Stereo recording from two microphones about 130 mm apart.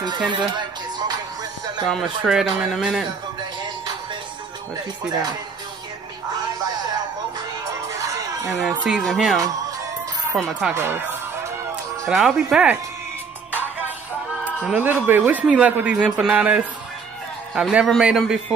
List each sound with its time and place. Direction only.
0.3 s music: 35° right (ahead or behind)
1.9 s speech: centre (ahead or behind)
6.3 s music: 30° right (ahead or behind)
8.8 s speech: centre (ahead or behind)
10.7 s music: 20° right (ahead or behind)
12.1 s speech: centre (ahead or behind)
14.6 s speech: 10° right (ahead or behind)